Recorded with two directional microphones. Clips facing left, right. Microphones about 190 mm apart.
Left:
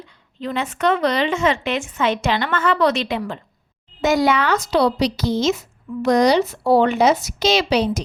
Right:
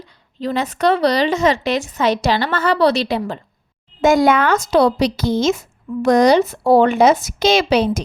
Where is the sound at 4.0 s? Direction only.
50° right (ahead or behind).